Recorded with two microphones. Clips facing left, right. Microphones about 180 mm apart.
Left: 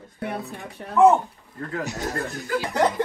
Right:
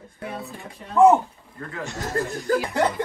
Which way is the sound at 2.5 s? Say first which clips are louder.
Right 5 dB; 40° right (ahead or behind).